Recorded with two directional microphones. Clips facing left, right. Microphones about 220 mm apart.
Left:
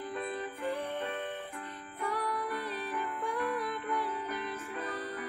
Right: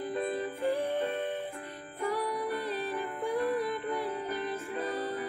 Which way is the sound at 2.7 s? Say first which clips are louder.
Right 3 dB; 35° right (ahead or behind).